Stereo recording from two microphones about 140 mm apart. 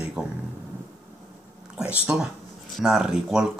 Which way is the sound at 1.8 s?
5° right (ahead or behind).